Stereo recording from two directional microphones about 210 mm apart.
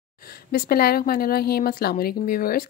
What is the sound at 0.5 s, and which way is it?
A woman's voice, 45° left (ahead or behind).